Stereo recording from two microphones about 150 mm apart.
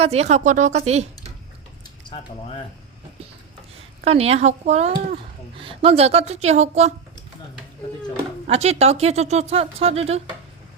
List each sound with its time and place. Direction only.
0.0 s speech: 45° right (ahead or behind)
4.0 s speech: 45° right (ahead or behind)
8.4 s speech: 45° right (ahead or behind)